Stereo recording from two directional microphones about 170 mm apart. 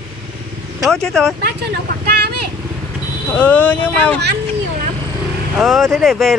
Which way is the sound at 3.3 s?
10° left (ahead or behind).